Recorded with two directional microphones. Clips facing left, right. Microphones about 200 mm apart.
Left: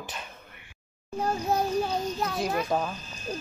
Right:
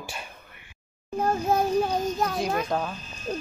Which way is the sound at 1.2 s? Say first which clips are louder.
Right 3 dB; 50° right (ahead or behind).